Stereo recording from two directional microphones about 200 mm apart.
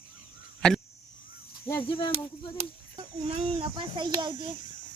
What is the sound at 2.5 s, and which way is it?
Speech, 30° right (ahead or behind).